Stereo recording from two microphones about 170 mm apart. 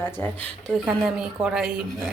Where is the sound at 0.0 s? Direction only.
10° left (ahead or behind).